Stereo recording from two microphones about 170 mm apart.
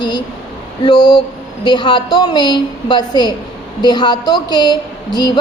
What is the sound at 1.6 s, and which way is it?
A woman's voice, 25° left (ahead or behind).